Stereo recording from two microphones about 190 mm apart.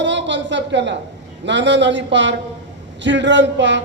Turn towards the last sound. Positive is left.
turn(degrees=-70)  # may be behind; listen again after turning